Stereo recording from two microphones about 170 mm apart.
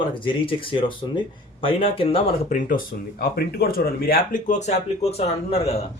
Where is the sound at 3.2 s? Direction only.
65° left (ahead or behind); by 5.8 s 35° left (ahead or behind).